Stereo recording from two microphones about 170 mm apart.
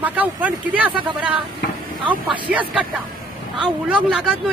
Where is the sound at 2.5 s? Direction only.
10° right (ahead or behind).